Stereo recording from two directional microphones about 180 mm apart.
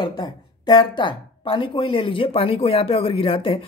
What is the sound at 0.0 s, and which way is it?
A woman's voice, 25° left (ahead or behind).